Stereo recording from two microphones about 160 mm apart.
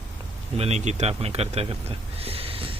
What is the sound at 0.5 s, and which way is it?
Speech, 40° right (ahead or behind).